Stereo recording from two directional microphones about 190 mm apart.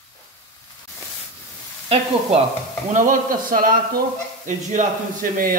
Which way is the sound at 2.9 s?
45° right (ahead or behind).